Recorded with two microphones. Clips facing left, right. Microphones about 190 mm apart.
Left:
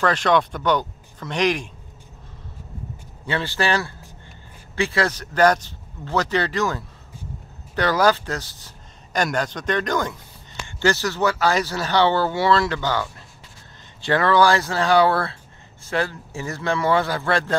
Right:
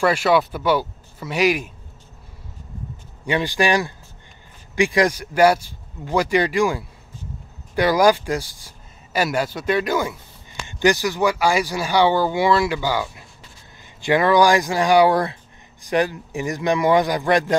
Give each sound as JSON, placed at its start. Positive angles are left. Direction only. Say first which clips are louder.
{"t": 0.0, "sound": "speech", "louder": "right 2 dB", "side_deg": -10}
{"t": 3.3, "sound": "speech", "louder": "right 3 dB", "side_deg": -15}